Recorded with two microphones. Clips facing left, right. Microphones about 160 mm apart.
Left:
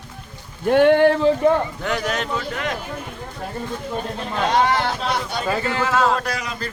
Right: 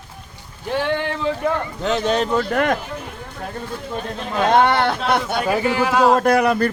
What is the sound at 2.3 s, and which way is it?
Speech, 55° right (ahead or behind).